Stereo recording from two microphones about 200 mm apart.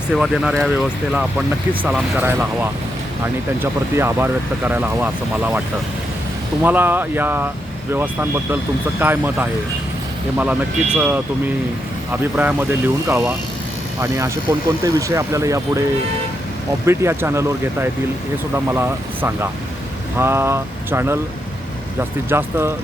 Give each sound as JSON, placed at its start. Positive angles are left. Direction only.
{"t": 0.1, "sound": "speech", "side_deg": 0}
{"t": 14.9, "sound": "speech", "side_deg": -15}
{"t": 16.8, "sound": "speech", "side_deg": -15}
{"t": 22.3, "sound": "speech", "side_deg": -10}